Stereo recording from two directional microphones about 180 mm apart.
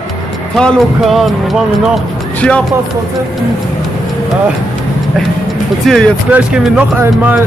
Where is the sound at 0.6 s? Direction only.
Centre (ahead or behind).